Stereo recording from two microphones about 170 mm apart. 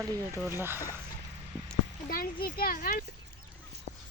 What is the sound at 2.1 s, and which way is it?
Speech, 60° left (ahead or behind).